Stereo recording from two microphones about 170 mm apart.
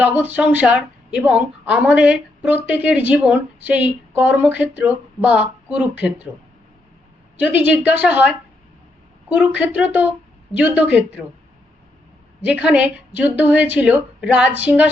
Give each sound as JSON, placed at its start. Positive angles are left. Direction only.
{"t": 0.0, "sound": "a woman's voice", "side_deg": -10}
{"t": 7.3, "sound": "a woman's voice", "side_deg": -10}
{"t": 12.4, "sound": "a woman's voice", "side_deg": -10}